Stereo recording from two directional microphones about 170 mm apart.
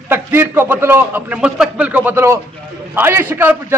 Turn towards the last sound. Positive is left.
turn(degrees=-15)  # may be behind; listen again after turning